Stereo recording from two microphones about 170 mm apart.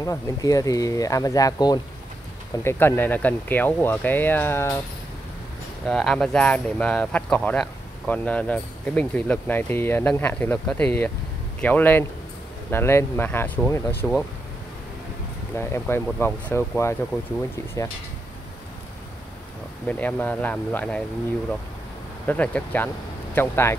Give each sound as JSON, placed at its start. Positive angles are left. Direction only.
{"t": 0.0, "sound": "speech", "side_deg": 20}
{"t": 5.9, "sound": "speech", "side_deg": 5}
{"t": 15.5, "sound": "speech", "side_deg": 15}
{"t": 19.9, "sound": "speech", "side_deg": 10}
{"t": 22.2, "sound": "speech", "side_deg": 10}